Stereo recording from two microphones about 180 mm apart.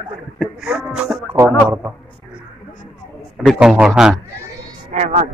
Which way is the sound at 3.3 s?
Centre (ahead or behind).